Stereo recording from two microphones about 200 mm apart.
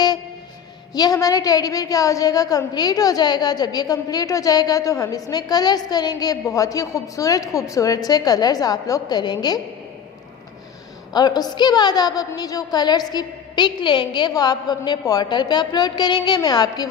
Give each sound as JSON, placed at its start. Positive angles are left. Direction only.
{"t": 0.9, "sound": "a woman's voice", "side_deg": 20}
{"t": 11.1, "sound": "a woman's voice", "side_deg": 20}